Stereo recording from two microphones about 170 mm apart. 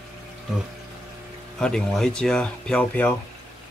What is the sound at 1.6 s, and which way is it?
Speech, 5° left (ahead or behind).